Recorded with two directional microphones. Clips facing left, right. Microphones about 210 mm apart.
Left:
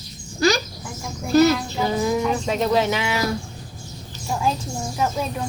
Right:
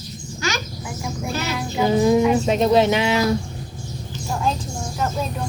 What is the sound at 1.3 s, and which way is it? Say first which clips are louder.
Music: left 16 dB; 40° left (ahead or behind).